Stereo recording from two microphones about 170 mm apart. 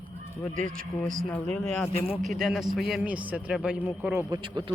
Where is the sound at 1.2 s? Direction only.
5° left (ahead or behind); by 4.2 s 10° right (ahead or behind).